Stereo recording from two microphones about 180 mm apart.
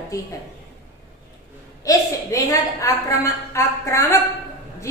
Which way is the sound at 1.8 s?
20° left (ahead or behind).